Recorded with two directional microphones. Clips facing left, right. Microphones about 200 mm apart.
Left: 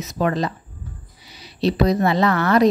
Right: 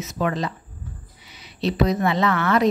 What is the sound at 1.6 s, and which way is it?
Speech, 35° left (ahead or behind).